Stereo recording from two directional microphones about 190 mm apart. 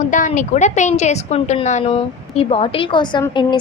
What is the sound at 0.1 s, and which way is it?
A woman's voice, 40° left (ahead or behind).